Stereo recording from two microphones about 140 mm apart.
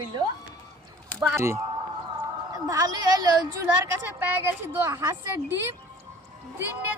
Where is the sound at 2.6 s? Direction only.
25° right (ahead or behind).